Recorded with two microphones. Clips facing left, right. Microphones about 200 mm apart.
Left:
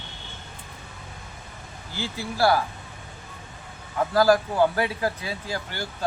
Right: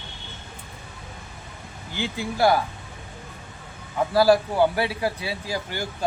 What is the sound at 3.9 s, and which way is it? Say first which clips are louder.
A man's voice: right 1 dB; 10° right (ahead or behind).